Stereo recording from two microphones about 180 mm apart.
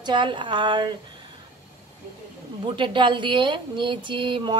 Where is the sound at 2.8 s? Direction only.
25° right (ahead or behind).